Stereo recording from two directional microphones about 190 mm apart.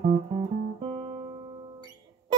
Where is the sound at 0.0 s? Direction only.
30° right (ahead or behind).